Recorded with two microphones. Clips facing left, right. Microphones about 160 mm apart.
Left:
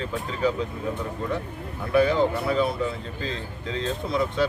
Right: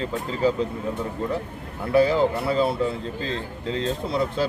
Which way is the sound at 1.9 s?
30° right (ahead or behind).